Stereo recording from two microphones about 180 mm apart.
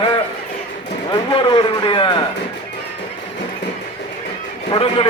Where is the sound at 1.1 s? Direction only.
25° left (ahead or behind).